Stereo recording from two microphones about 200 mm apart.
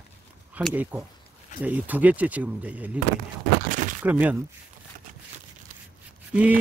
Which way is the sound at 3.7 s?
40° right (ahead or behind).